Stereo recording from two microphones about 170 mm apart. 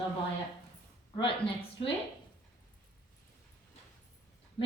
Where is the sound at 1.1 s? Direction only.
30° left (ahead or behind).